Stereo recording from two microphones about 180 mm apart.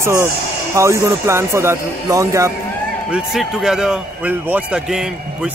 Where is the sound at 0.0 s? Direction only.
15° right (ahead or behind).